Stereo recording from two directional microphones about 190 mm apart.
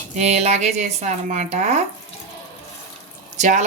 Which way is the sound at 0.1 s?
35° right (ahead or behind).